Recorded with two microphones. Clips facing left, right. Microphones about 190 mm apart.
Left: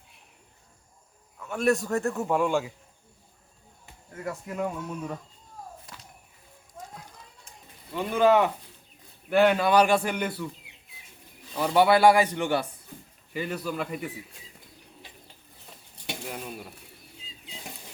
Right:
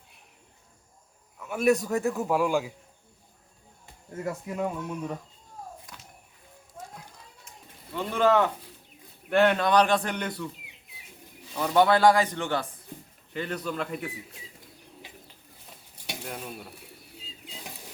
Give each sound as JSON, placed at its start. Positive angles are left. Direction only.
{"t": 1.4, "sound": "a man's voice", "side_deg": 0}
{"t": 4.1, "sound": "speech", "side_deg": -25}
{"t": 4.4, "sound": "a man's voice", "side_deg": 0}
{"t": 7.9, "sound": "a man's voice", "side_deg": 10}
{"t": 11.5, "sound": "a man's voice", "side_deg": 10}
{"t": 16.0, "sound": "a sound", "side_deg": 0}